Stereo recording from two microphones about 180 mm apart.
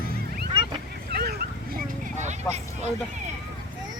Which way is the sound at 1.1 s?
60° right (ahead or behind).